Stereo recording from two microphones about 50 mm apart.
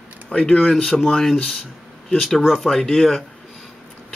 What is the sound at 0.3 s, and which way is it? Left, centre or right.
Speech, left.